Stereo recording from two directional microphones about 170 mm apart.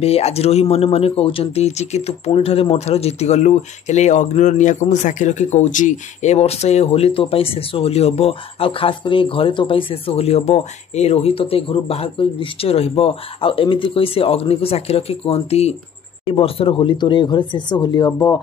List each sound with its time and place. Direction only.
0.0 s speech: 35° left (ahead or behind)